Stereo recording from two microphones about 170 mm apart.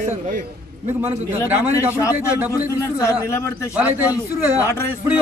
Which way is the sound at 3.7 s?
10° right (ahead or behind).